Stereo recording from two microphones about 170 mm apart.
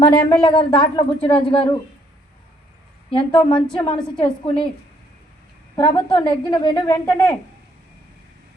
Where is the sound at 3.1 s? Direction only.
25° left (ahead or behind).